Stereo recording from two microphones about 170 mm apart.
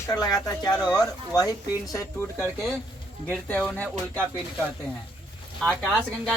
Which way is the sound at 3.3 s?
5° left (ahead or behind).